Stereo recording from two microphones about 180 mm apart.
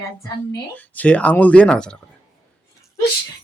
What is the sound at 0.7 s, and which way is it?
Speech, 10° left (ahead or behind).